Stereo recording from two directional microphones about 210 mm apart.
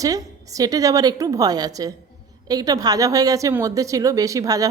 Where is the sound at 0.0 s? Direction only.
15° right (ahead or behind).